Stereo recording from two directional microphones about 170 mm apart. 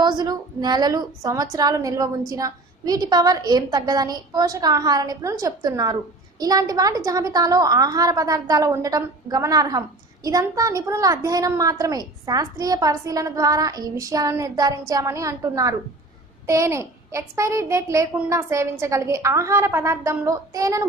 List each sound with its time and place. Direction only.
0.0 s a woman's voice: 25° right (ahead or behind)